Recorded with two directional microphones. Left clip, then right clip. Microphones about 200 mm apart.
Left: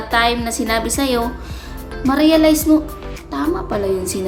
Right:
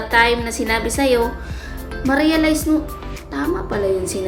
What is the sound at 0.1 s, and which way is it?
A woman's voice, 10° left (ahead or behind).